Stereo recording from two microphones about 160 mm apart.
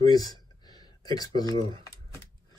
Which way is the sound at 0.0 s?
25° left (ahead or behind).